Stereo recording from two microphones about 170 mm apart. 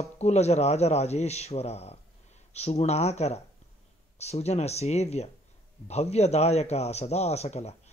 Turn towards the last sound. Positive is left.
turn(degrees=40)  # may be behind; listen again after turning